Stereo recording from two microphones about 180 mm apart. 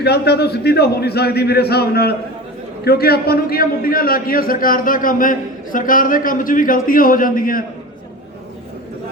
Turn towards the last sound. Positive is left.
turn(degrees=50)  # may be behind; listen again after turning